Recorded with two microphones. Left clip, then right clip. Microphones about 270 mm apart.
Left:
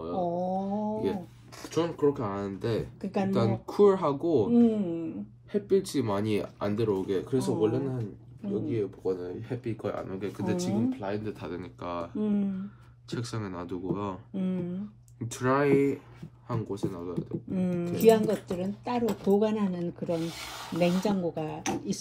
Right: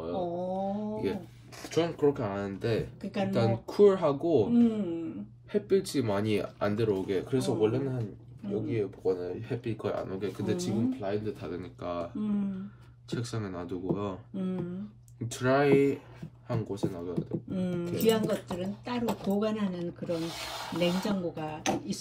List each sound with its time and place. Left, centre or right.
0.0 s a sound: centre
0.9 s speech: centre
15.2 s speech: centre